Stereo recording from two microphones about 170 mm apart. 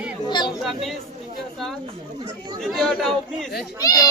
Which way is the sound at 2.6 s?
Centre (ahead or behind).